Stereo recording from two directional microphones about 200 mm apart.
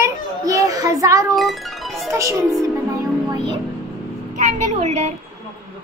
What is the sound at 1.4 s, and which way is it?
Speech, centre (ahead or behind).